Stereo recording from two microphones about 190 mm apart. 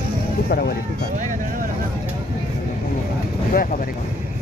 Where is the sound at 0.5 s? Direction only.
55° left (ahead or behind).